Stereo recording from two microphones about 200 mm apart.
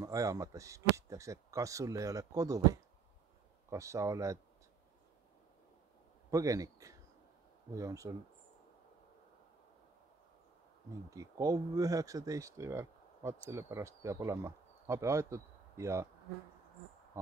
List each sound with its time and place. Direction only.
0.0 s speech: 15° right (ahead or behind)
6.3 s speech: 15° right (ahead or behind)
10.9 s speech: 15° right (ahead or behind)